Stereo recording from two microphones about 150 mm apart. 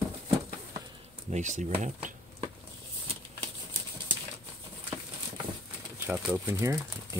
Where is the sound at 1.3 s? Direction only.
55° right (ahead or behind).